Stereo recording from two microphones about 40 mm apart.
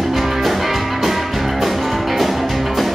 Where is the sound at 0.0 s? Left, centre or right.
Centre.